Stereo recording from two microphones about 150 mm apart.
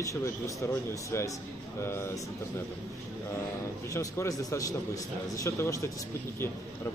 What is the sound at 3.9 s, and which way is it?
Speech, 20° left (ahead or behind).